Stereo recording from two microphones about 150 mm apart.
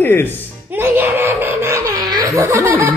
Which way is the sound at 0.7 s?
15° right (ahead or behind).